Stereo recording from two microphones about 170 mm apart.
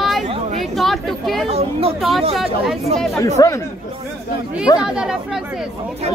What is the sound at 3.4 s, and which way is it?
Speech, 20° left (ahead or behind).